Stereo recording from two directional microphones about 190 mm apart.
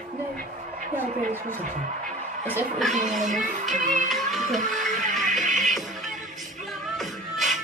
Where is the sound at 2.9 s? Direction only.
40° right (ahead or behind).